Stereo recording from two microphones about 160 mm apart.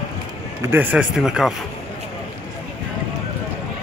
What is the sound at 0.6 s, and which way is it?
Speech, 15° right (ahead or behind).